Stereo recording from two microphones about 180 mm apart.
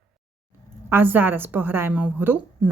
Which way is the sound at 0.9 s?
10° right (ahead or behind).